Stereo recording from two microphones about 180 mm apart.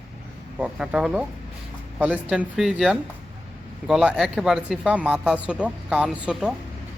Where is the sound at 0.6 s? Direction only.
5° right (ahead or behind).